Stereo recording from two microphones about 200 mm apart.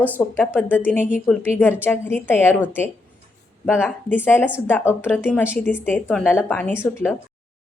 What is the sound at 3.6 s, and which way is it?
A woman's voice, 10° left (ahead or behind).